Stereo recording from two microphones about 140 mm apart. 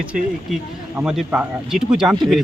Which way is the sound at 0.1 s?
10° right (ahead or behind).